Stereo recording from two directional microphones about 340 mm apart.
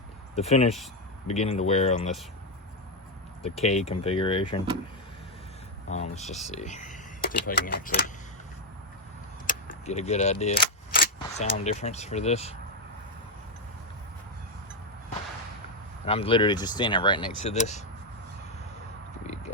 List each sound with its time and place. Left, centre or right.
0.3 s speech: centre
3.4 s speech: centre
5.9 s speech: centre
9.5 s a sound: left
10.4 s speech: left
16.0 s speech: centre